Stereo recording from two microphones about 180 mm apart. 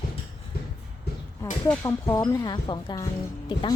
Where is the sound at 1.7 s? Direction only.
15° left (ahead or behind).